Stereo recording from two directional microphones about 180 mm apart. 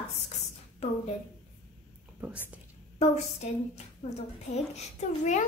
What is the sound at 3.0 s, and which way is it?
A woman's voice, 35° left (ahead or behind).